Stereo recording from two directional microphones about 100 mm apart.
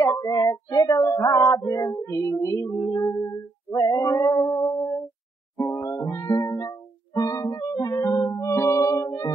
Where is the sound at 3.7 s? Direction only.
35° left (ahead or behind).